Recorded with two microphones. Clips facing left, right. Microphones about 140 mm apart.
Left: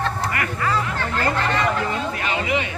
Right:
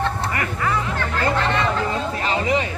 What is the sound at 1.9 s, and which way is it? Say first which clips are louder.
Speech: right 2 dB; 30° right (ahead or behind).